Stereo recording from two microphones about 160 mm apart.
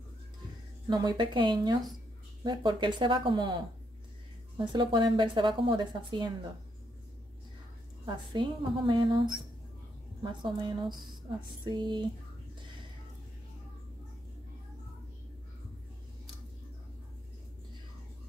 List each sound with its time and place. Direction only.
0.8 s speech: 25° right (ahead or behind)
8.0 s speech: 30° right (ahead or behind)